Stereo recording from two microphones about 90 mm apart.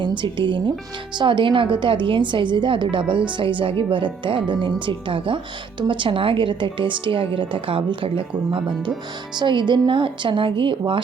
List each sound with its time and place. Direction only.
0.0 s a woman's voice: 60° right (ahead or behind)